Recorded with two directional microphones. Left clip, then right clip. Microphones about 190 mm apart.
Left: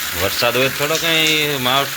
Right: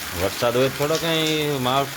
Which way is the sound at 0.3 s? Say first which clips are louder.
Left 3 dB; 15° right (ahead or behind).